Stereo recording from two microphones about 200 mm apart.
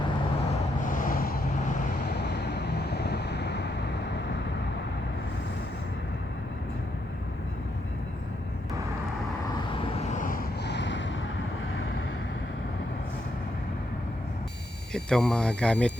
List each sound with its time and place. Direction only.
0.9 s vehicle: 45° left (ahead or behind)
2.2 s vehicle: 55° left (ahead or behind)
10.0 s vehicle: 35° left (ahead or behind); by 11.1 s 65° left (ahead or behind)
14.9 s speech: centre (ahead or behind)